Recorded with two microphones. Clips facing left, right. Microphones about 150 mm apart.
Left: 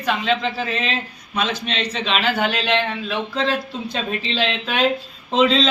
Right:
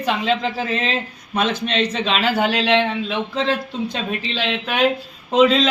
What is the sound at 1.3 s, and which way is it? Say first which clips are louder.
Speech: right 4 dB; 50° right (ahead or behind).